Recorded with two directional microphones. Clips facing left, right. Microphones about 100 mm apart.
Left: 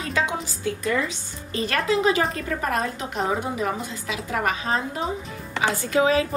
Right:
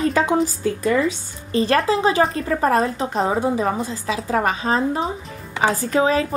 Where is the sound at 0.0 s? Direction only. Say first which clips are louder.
Right 8 dB; 40° right (ahead or behind).